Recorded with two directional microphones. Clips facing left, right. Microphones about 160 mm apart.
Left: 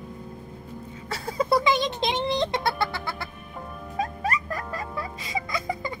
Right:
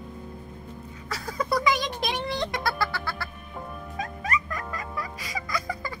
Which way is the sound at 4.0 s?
30° left (ahead or behind).